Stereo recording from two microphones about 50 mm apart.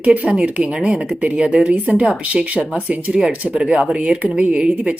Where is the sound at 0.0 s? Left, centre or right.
Right.